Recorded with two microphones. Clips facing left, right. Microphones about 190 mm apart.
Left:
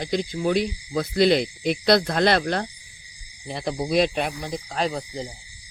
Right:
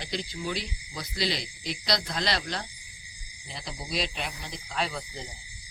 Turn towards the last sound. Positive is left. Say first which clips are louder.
# left 7 dB
turn(degrees=40)  # may be behind; listen again after turning